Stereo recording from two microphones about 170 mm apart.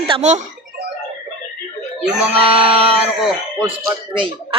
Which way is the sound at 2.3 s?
30° right (ahead or behind).